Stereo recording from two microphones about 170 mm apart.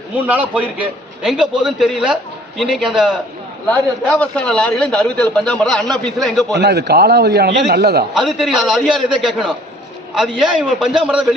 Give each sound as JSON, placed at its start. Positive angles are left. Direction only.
{"t": 0.2, "sound": "a man's voice", "side_deg": -10}
{"t": 3.7, "sound": "a man's voice", "side_deg": 5}
{"t": 6.5, "sound": "a man's voice", "side_deg": -80}
{"t": 8.1, "sound": "a man's voice", "side_deg": 0}